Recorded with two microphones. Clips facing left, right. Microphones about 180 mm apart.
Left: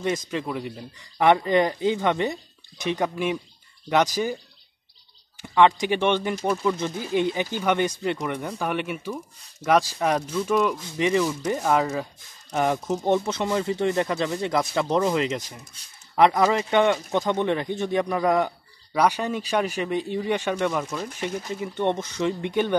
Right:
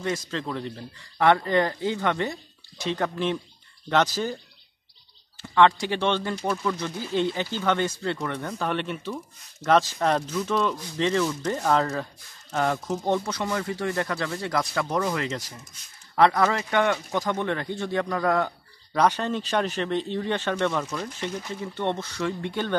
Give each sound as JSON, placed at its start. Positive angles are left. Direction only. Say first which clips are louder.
{"t": 0.0, "sound": "speech", "louder": "left 3 dB", "side_deg": 20}
{"t": 5.4, "sound": "speech", "louder": "left 1 dB", "side_deg": 15}